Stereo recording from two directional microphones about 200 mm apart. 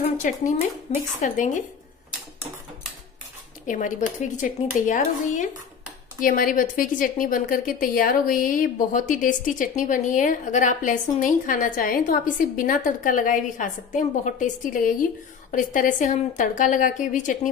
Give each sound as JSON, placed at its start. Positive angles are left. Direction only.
{"t": 0.2, "sound": "a woman's voice", "side_deg": 40}
{"t": 3.6, "sound": "a woman's voice", "side_deg": 40}